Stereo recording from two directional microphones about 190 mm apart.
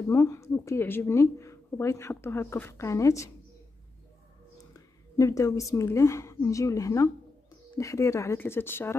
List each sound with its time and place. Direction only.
0.1 s speech: 15° left (ahead or behind)
4.7 s a woman's voice: 15° left (ahead or behind)